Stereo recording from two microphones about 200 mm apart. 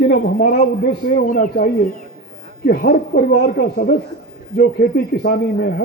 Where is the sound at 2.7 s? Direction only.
50° left (ahead or behind).